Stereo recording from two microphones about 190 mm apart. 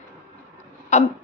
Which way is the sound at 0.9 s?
35° left (ahead or behind).